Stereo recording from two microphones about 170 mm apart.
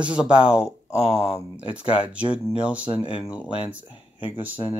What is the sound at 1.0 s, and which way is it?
Speech, 35° left (ahead or behind).